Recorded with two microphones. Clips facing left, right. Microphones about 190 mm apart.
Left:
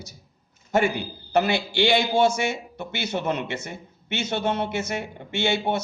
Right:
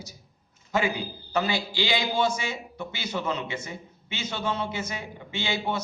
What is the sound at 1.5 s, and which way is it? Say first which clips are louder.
A man's voice: left 6 dB; 65° left (ahead or behind).